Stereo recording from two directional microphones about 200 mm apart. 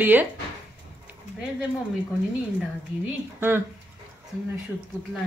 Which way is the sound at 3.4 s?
10° right (ahead or behind).